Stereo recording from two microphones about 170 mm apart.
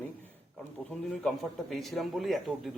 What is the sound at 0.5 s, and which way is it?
A man's voice, 5° left (ahead or behind).